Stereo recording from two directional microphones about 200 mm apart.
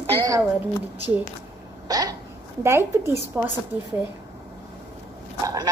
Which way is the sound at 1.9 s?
20° right (ahead or behind).